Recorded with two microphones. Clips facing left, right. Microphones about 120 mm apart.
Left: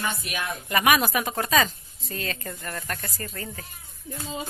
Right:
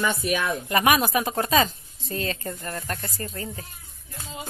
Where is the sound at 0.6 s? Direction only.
30° right (ahead or behind).